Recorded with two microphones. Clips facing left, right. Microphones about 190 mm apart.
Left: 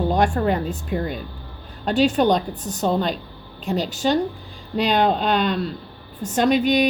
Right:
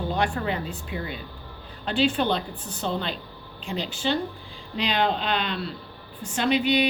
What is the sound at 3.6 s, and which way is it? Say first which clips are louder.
Speech: left 6 dB; 40° left (ahead or behind).